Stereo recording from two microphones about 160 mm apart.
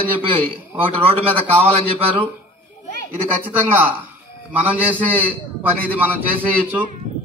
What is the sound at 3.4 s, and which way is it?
Speech, 10° right (ahead or behind).